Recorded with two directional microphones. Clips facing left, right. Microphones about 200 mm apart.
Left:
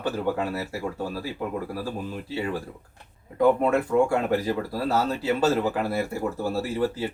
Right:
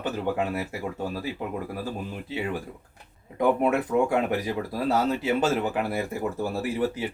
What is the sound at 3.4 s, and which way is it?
Speech, 20° right (ahead or behind).